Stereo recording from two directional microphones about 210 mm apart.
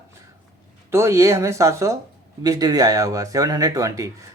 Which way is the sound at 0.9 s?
15° right (ahead or behind).